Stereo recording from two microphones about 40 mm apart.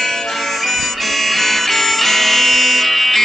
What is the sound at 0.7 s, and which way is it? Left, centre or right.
Music, centre.